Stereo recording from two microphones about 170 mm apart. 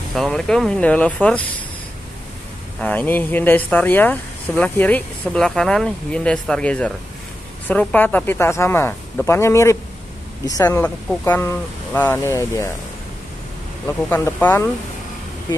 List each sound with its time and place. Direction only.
0.1 s speech: centre (ahead or behind)
2.8 s speech: 10° left (ahead or behind)
13.8 s speech: 10° left (ahead or behind)